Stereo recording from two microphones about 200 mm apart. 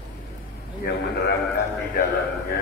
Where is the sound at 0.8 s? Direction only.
55° left (ahead or behind).